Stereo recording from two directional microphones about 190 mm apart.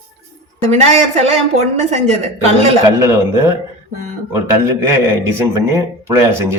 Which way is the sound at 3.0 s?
15° right (ahead or behind).